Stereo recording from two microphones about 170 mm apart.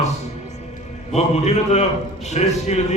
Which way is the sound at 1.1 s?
40° left (ahead or behind).